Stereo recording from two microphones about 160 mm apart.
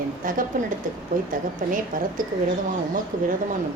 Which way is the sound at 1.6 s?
55° right (ahead or behind).